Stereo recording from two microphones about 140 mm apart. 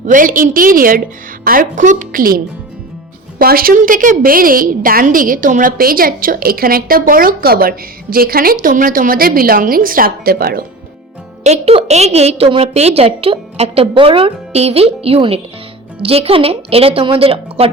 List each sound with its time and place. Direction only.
0.0 s a woman's voice: 75° right (ahead or behind); by 10.7 s 90° right
11.4 s a woman's voice: 50° right (ahead or behind)